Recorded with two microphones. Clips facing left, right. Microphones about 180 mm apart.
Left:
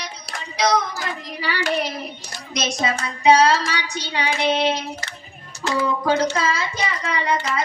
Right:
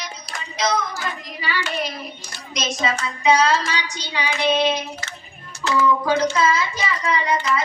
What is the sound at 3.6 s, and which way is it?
Child singing, 60° left (ahead or behind).